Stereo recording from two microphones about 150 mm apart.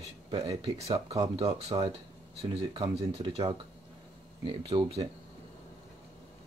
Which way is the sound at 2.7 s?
35° right (ahead or behind).